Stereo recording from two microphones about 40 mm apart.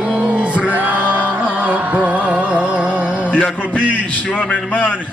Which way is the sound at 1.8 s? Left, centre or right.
Right.